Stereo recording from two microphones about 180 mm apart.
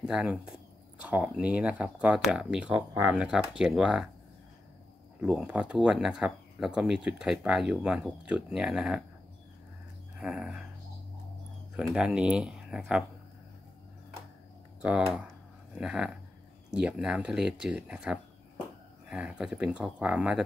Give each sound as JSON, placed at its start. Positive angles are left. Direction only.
{"t": 0.0, "sound": "speech", "side_deg": -5}
{"t": 5.2, "sound": "speech", "side_deg": -5}
{"t": 10.1, "sound": "a sound", "side_deg": -5}
{"t": 11.7, "sound": "speech", "side_deg": -5}
{"t": 14.8, "sound": "speech", "side_deg": -5}